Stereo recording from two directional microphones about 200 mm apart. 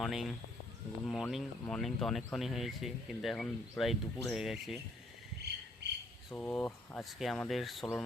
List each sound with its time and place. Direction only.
0.0 s speech: centre (ahead or behind)
5.8 s insect: 55° right (ahead or behind)
6.3 s speech: 10° left (ahead or behind)